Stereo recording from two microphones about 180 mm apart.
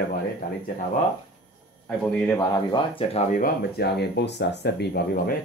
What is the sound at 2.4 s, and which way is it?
Speech, 25° left (ahead or behind).